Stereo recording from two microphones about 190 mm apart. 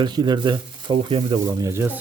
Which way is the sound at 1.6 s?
15° right (ahead or behind).